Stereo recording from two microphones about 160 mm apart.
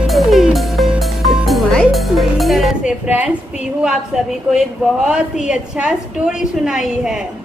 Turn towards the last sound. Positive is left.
turn(degrees=-5)  # may be behind; listen again after turning